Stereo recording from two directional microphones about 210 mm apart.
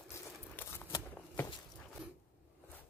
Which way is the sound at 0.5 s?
10° left (ahead or behind).